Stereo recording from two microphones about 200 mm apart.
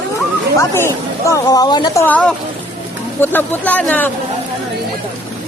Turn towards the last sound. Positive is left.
turn(degrees=5)  # may be behind; listen again after turning